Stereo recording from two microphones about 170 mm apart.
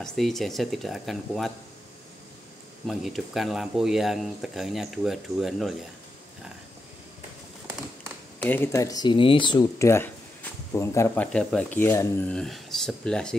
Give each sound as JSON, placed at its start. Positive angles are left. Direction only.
{"t": 0.0, "sound": "speech", "side_deg": 0}
{"t": 2.9, "sound": "speech", "side_deg": 0}
{"t": 8.4, "sound": "speech", "side_deg": 10}